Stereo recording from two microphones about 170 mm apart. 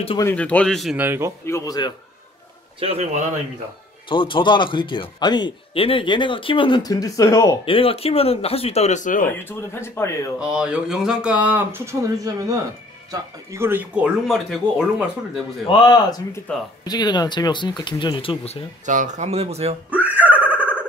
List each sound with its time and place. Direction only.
0.2 s speech: 10° left (ahead or behind)
0.9 s speech: 10° right (ahead or behind)
1.4 s a man's voice: 20° left (ahead or behind)
2.8 s speech: 35° right (ahead or behind)
4.1 s a man's voice: 30° left (ahead or behind)
7.6 s speech: 35° left (ahead or behind); by 9.3 s 50° left (ahead or behind)
9.4 s speech: 15° left (ahead or behind)
10.4 s speech: 5° right (ahead or behind)
15.6 s a man's voice: 30° left (ahead or behind)
16.5 s speech: 5° left (ahead or behind)
16.8 s a man's voice: 25° left (ahead or behind)
18.9 s speech: 45° right (ahead or behind)
19.9 s a sound: 10° right (ahead or behind)